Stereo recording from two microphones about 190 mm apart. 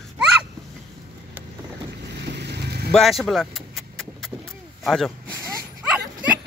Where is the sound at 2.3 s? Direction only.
60° right (ahead or behind).